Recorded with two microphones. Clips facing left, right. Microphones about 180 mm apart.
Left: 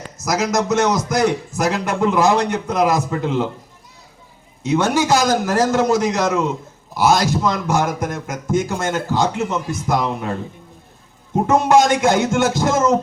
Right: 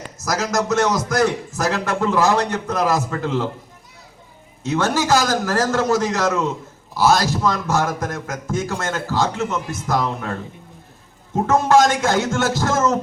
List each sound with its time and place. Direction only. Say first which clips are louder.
0.4 s a man's voice: left 1 dB; 15° left (ahead or behind)
4.6 s a man's voice: left 3 dB; 15° left (ahead or behind)
11.4 s a man's voice: left 1 dB; 15° left (ahead or behind)